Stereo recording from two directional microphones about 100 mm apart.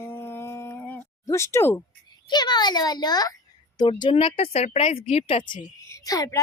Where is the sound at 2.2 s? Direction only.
45° left (ahead or behind).